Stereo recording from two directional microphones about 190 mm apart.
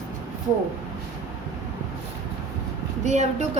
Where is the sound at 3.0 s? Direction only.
35° right (ahead or behind).